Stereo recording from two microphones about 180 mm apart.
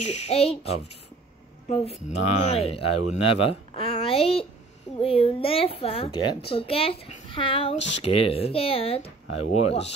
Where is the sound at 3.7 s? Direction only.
30° left (ahead or behind).